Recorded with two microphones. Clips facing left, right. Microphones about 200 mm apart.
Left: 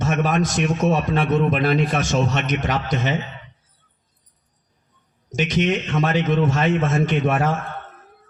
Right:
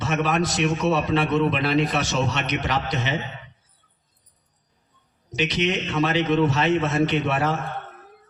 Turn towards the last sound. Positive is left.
turn(degrees=45)  # may be behind; listen again after turning